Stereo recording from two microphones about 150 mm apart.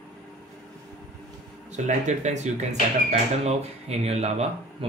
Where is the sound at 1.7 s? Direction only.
50° right (ahead or behind).